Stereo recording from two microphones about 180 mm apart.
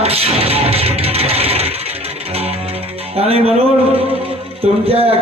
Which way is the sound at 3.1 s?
35° right (ahead or behind).